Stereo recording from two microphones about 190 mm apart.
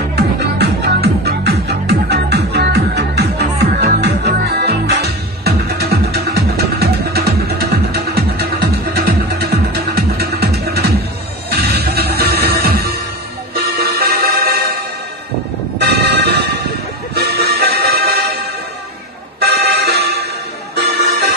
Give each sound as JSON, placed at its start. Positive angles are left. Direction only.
{"t": 0.1, "sound": "music", "side_deg": -60}
{"t": 15.8, "sound": "vehicle", "side_deg": -65}
{"t": 17.1, "sound": "music", "side_deg": -55}
{"t": 19.4, "sound": "music", "side_deg": -55}